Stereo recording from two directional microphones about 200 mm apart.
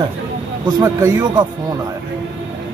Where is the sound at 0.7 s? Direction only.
15° right (ahead or behind).